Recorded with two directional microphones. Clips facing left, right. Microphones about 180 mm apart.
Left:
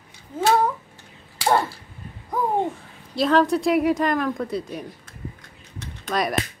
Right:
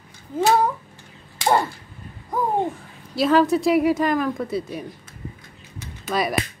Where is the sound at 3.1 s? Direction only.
5° right (ahead or behind).